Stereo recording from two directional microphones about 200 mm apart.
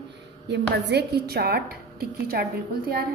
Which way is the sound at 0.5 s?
55° right (ahead or behind).